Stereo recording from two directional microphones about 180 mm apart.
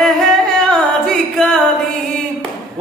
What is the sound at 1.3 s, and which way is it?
Music, centre (ahead or behind).